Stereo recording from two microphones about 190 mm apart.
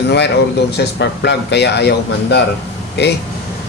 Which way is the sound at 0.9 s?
65° left (ahead or behind).